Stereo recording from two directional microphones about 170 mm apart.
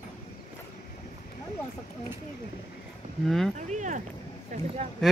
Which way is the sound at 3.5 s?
45° right (ahead or behind).